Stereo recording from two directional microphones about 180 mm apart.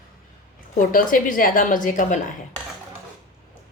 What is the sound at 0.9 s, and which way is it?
Speech, 50° left (ahead or behind).